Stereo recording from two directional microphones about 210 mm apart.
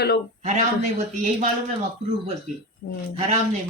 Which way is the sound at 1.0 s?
35° right (ahead or behind).